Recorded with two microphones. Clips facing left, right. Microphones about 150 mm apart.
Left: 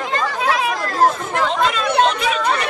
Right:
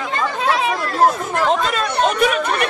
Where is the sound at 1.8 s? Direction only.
50° right (ahead or behind).